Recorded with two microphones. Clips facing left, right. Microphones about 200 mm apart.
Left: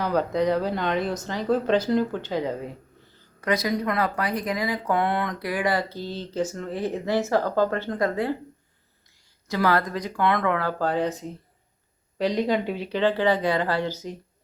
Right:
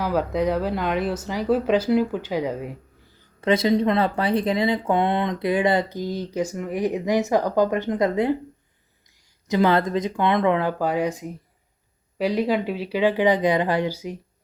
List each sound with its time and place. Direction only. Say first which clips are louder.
0.0 s speech: right 1 dB; 5° right (ahead or behind)
3.4 s speech: right 6 dB; 25° right (ahead or behind); by 14.2 s 10° right (ahead or behind)